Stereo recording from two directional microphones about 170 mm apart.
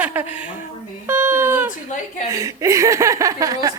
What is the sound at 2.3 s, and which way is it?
A woman's voice, 20° right (ahead or behind).